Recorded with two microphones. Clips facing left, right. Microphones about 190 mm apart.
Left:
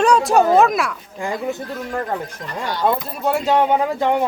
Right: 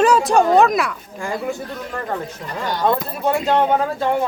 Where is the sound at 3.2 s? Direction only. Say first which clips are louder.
Even; centre (ahead or behind).